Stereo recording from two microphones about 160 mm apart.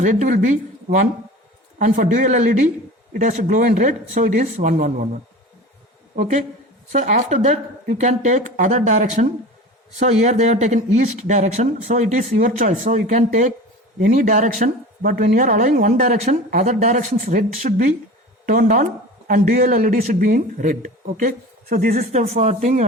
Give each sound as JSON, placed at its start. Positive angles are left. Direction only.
{"t": 0.0, "sound": "speech", "side_deg": -55}
{"t": 6.9, "sound": "speech", "side_deg": -50}